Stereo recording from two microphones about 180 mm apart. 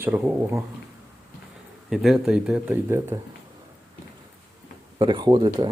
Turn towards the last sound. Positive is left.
turn(degrees=-25)  # may be behind; listen again after turning